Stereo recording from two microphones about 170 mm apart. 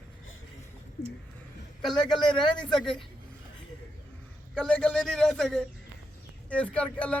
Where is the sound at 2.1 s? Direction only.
25° left (ahead or behind).